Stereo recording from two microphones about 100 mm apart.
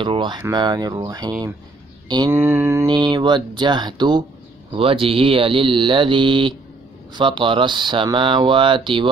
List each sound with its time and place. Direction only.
0.0 s speech: 55° right (ahead or behind)
2.3 s mantra: 25° right (ahead or behind)
2.9 s speech: 45° right (ahead or behind)
4.7 s speech: 65° right (ahead or behind)